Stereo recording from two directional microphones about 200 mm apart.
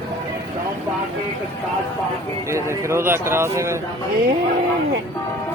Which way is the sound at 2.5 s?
15° right (ahead or behind).